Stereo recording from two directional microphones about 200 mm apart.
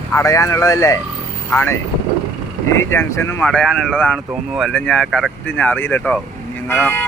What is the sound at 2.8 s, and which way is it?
Speech, 10° left (ahead or behind).